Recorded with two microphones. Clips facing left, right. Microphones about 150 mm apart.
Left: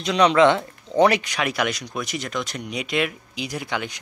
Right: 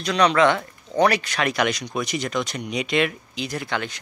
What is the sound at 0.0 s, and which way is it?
Speech, 20° left (ahead or behind).